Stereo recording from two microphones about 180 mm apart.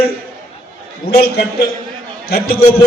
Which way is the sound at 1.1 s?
60° left (ahead or behind).